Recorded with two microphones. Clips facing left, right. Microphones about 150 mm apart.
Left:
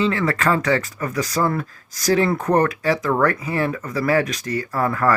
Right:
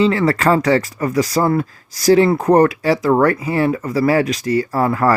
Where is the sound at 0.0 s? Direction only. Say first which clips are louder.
Right 5 dB; 35° right (ahead or behind).